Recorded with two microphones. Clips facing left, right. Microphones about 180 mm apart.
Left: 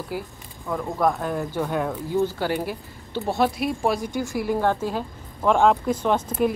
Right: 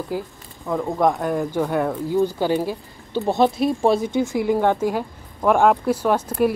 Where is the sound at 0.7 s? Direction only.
15° right (ahead or behind).